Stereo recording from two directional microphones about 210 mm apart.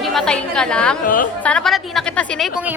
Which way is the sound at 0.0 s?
Centre (ahead or behind).